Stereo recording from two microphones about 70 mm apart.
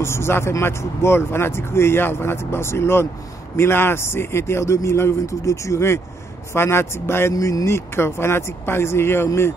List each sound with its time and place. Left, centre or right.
0.0 s speech: left
7.3 s speech: left